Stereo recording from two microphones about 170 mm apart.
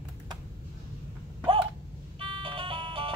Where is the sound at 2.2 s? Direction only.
30° right (ahead or behind).